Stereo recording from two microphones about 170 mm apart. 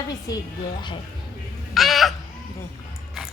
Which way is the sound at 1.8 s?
Centre (ahead or behind).